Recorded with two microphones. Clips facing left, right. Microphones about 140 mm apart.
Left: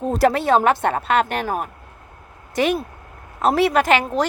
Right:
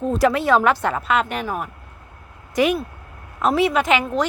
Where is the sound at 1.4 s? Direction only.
35° left (ahead or behind).